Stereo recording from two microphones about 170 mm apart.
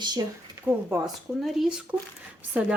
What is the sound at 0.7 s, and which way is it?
Speech, 5° right (ahead or behind).